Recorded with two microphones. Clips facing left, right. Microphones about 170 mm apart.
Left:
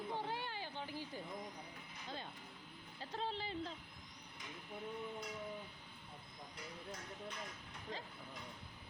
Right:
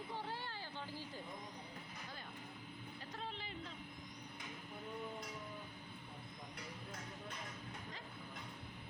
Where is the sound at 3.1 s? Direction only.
30° left (ahead or behind).